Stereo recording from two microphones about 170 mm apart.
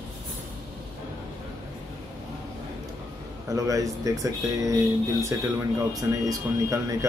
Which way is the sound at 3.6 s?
20° right (ahead or behind).